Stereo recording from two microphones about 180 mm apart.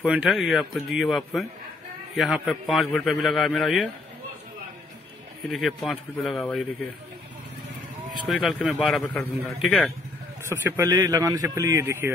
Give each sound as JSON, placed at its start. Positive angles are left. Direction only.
{"t": 0.0, "sound": "speech", "side_deg": -5}
{"t": 5.4, "sound": "speech", "side_deg": 0}
{"t": 8.1, "sound": "speech", "side_deg": 0}
{"t": 10.5, "sound": "a man's voice", "side_deg": -15}